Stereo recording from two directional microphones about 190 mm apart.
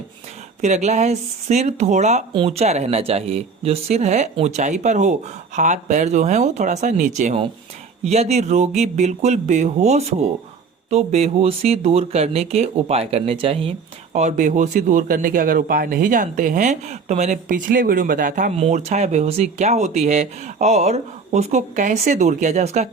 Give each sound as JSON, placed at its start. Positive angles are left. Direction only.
{"t": 0.6, "sound": "speech", "side_deg": -35}